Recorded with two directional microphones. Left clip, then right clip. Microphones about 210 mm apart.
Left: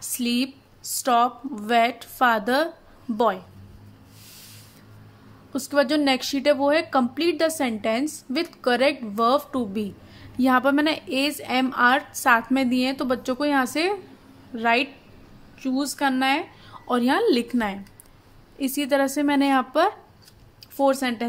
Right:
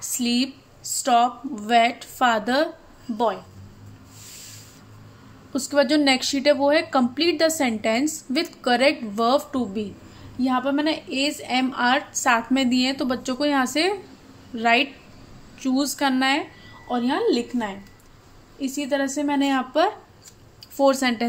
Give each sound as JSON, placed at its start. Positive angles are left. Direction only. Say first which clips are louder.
{"t": 0.2, "sound": "a woman's voice", "louder": "right 1 dB", "side_deg": 10}
{"t": 5.5, "sound": "a woman's voice", "louder": "right 2 dB", "side_deg": 10}
{"t": 10.4, "sound": "a woman's voice", "louder": "left 3 dB", "side_deg": 30}
{"t": 16.8, "sound": "a woman's voice", "louder": "left 2 dB", "side_deg": 25}